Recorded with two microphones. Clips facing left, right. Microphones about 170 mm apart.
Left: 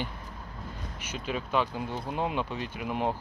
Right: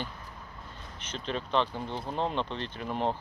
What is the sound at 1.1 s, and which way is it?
Speech, 10° left (ahead or behind).